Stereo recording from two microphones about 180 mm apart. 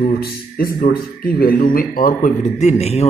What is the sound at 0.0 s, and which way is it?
A man's voice, 55° left (ahead or behind).